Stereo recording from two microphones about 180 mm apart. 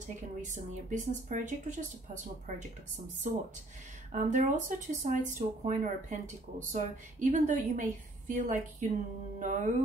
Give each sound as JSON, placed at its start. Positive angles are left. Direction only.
{"t": 0.0, "sound": "speech", "side_deg": -45}